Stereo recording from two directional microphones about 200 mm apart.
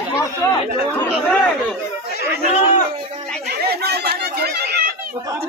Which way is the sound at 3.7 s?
50° right (ahead or behind).